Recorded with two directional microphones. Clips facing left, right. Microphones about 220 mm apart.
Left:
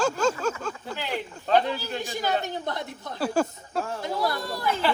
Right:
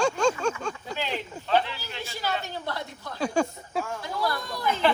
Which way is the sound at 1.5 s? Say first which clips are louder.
Left 3 dB; 45° left (ahead or behind).